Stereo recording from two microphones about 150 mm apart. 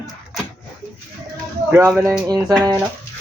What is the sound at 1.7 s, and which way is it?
Speech, 20° right (ahead or behind).